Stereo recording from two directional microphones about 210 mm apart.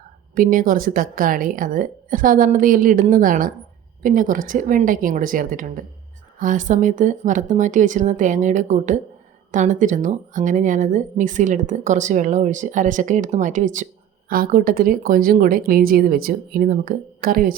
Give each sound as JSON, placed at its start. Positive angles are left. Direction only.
{"t": 0.3, "sound": "a woman's voice", "side_deg": -40}